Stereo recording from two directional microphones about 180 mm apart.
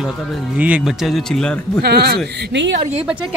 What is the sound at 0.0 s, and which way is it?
Speech, 5° right (ahead or behind).